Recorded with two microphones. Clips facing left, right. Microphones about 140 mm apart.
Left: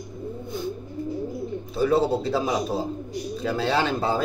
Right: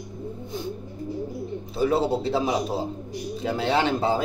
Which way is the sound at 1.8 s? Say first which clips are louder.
Left 1 dB; 25° right (ahead or behind).